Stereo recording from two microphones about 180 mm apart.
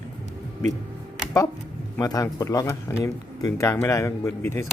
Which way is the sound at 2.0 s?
20° left (ahead or behind).